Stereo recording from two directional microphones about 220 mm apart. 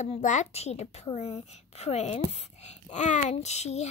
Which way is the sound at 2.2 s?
30° left (ahead or behind).